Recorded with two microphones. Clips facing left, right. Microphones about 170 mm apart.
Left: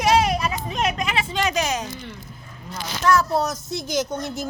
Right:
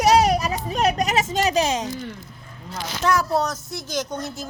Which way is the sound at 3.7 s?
10° left (ahead or behind).